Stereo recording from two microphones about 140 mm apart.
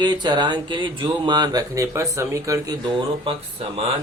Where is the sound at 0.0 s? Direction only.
30° right (ahead or behind).